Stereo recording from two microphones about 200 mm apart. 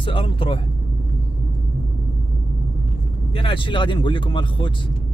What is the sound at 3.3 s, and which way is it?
Speech, 25° left (ahead or behind).